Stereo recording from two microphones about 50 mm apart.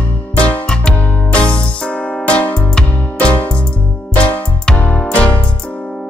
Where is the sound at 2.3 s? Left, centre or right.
Left.